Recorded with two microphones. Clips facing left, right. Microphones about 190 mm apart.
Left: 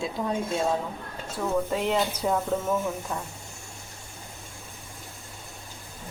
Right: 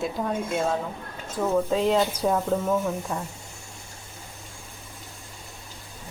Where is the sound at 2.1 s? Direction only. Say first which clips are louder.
Right 2 dB; 10° right (ahead or behind).